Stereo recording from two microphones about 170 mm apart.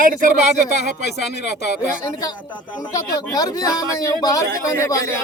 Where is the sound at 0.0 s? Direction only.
50° right (ahead or behind).